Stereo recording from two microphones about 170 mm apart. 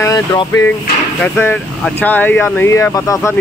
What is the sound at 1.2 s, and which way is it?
Speech, 10° left (ahead or behind).